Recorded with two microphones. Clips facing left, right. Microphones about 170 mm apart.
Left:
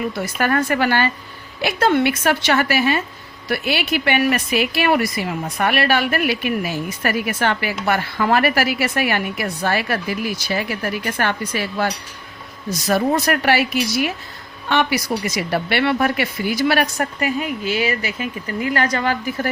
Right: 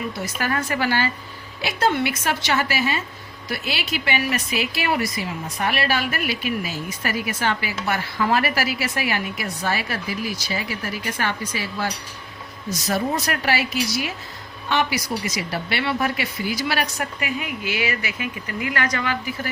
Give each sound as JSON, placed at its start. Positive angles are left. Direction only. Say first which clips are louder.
{"t": 0.2, "sound": "speech", "louder": "left 7 dB", "side_deg": 60}
{"t": 12.9, "sound": "speech", "louder": "left 6 dB", "side_deg": 60}